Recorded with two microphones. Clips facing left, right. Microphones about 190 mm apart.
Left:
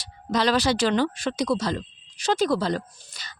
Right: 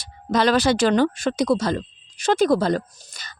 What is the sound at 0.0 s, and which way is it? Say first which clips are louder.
A woman's voice: right 4 dB; 50° right (ahead or behind).